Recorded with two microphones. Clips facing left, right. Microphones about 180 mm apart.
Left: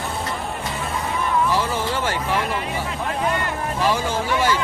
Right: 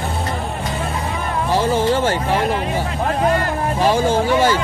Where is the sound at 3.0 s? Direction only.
40° right (ahead or behind).